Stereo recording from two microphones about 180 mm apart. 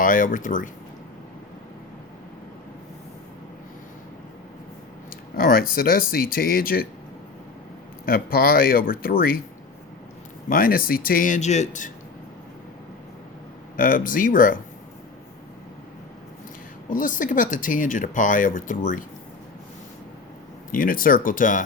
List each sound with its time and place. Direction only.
0.0 s speech: 50° left (ahead or behind)
5.4 s speech: 55° left (ahead or behind)
8.0 s speech: 55° left (ahead or behind)
10.5 s speech: 50° left (ahead or behind)
13.7 s speech: 50° left (ahead or behind)
16.9 s speech: 50° left (ahead or behind)
20.7 s speech: 50° left (ahead or behind)